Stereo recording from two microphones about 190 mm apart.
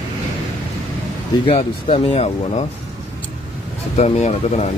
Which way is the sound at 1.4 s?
30° left (ahead or behind).